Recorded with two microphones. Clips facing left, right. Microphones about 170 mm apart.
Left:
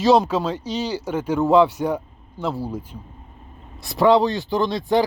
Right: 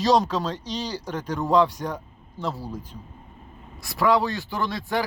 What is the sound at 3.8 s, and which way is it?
Speech, 25° left (ahead or behind).